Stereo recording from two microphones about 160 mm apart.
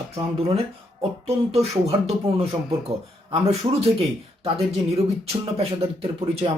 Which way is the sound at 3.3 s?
40° right (ahead or behind).